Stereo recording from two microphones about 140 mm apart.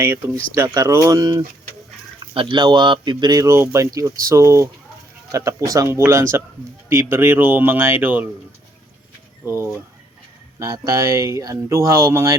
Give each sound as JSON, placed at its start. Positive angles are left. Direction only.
{"t": 0.0, "sound": "speech", "side_deg": -20}
{"t": 9.5, "sound": "speech", "side_deg": -15}